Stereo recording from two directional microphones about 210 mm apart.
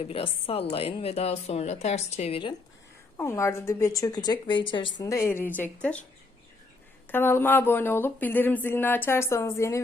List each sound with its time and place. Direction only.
0.0 s a woman's voice: 25° left (ahead or behind)
3.2 s speech: 15° left (ahead or behind)
7.1 s speech: 10° left (ahead or behind)